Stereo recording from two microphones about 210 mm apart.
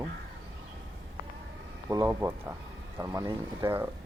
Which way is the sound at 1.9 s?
15° right (ahead or behind).